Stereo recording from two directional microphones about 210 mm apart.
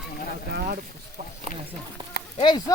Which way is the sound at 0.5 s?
45° right (ahead or behind).